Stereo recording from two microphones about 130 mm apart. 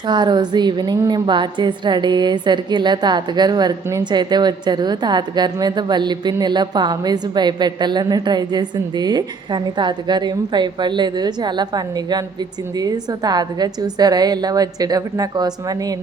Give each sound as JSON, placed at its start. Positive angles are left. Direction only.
{"t": 0.1, "sound": "a woman's voice", "side_deg": -35}